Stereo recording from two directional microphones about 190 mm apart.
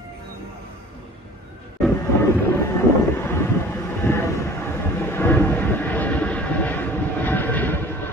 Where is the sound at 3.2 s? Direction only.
15° left (ahead or behind).